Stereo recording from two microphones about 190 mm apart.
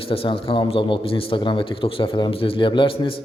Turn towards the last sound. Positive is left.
turn(degrees=30)  # may be behind; listen again after turning